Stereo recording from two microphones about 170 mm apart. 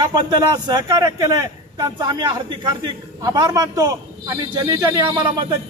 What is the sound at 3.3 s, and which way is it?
A man's voice, 20° right (ahead or behind).